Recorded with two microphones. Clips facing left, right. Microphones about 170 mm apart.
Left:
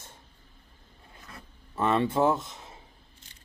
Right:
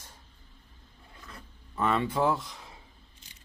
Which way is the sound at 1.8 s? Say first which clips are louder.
Left 3 dB; 25° left (ahead or behind).